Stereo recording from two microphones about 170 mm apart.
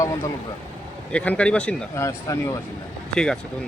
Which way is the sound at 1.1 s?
10° left (ahead or behind).